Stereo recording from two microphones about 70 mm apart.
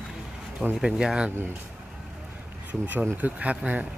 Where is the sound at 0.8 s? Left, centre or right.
Centre.